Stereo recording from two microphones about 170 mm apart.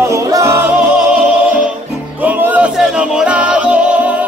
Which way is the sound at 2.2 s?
10° right (ahead or behind).